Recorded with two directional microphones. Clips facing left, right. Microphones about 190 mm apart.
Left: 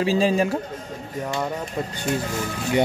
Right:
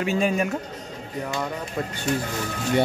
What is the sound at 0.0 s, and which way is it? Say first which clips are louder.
Speech: left 3 dB; 30° left (ahead or behind).